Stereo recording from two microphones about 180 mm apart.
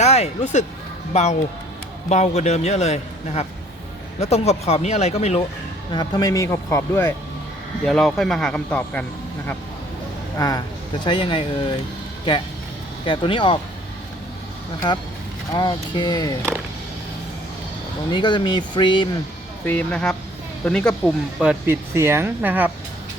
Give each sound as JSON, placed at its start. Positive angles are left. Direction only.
{"t": 0.0, "sound": "a man's voice", "side_deg": 35}
{"t": 5.9, "sound": "speech", "side_deg": 20}
{"t": 7.9, "sound": "speech", "side_deg": 0}
{"t": 10.3, "sound": "speech", "side_deg": 20}
{"t": 13.1, "sound": "speech", "side_deg": 25}
{"t": 15.5, "sound": "speech", "side_deg": 25}
{"t": 18.1, "sound": "speech", "side_deg": 25}
{"t": 19.6, "sound": "speech", "side_deg": 5}
{"t": 21.4, "sound": "speech", "side_deg": -15}